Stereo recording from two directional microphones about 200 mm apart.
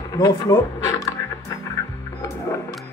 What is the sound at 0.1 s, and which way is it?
Speech, 20° left (ahead or behind).